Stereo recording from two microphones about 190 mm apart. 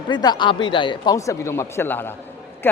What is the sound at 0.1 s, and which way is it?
Speech, 25° left (ahead or behind).